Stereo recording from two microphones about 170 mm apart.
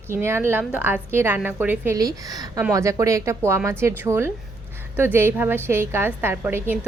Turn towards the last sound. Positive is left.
turn(degrees=-10)  # may be behind; listen again after turning